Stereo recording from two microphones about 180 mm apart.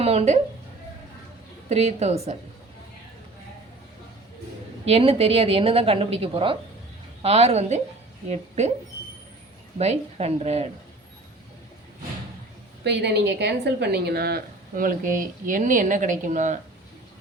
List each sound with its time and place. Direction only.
0.0 s speech: 35° right (ahead or behind)
1.7 s a woman's voice: 35° right (ahead or behind)
4.9 s a woman's voice: 30° right (ahead or behind)
9.7 s a woman's voice: 35° right (ahead or behind)
12.8 s a woman's voice: 70° right (ahead or behind); by 16.6 s 45° right (ahead or behind)